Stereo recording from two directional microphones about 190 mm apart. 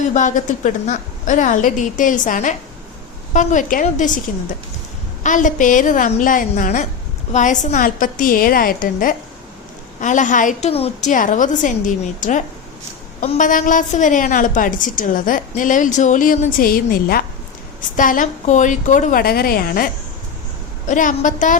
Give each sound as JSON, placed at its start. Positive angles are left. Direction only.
{"t": 0.1, "sound": "a woman's voice", "side_deg": 40}
{"t": 5.2, "sound": "a woman's voice", "side_deg": 40}